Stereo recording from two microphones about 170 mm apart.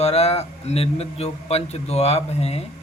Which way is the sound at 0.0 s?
40° left (ahead or behind).